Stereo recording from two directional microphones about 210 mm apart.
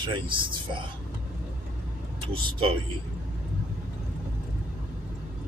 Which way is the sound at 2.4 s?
25° right (ahead or behind).